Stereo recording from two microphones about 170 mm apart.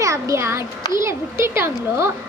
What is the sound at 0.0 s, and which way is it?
A child's voice, 15° right (ahead or behind).